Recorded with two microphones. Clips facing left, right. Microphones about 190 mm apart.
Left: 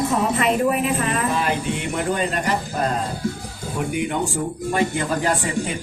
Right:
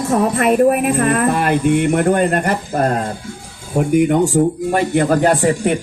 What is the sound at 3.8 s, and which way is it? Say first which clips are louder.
Speech: right 10 dB; 45° right (ahead or behind).